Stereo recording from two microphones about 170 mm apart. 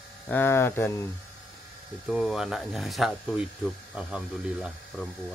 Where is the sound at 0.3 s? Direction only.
15° left (ahead or behind).